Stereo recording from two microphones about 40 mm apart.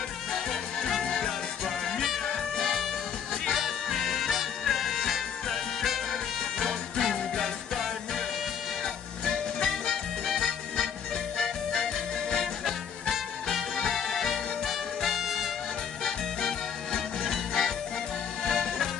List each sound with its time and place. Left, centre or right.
1.0 s music: centre
1.9 s music: centre
2.6 s music: centre
13.9 s music: centre
16.0 s music: centre
17.3 s music: centre